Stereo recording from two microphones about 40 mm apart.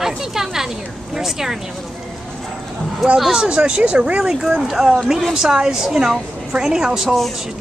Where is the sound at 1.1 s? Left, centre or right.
Centre.